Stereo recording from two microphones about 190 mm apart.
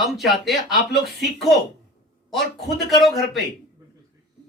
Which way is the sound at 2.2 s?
Centre (ahead or behind).